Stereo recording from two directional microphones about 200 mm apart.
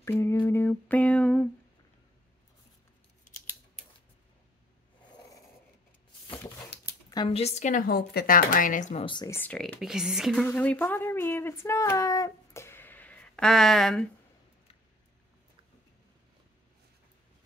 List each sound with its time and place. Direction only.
0.0 s humming: 15° left (ahead or behind)
7.1 s speech: 25° left (ahead or behind); by 9.0 s 40° left (ahead or behind)
9.0 s speech: 20° left (ahead or behind); by 14.0 s centre (ahead or behind)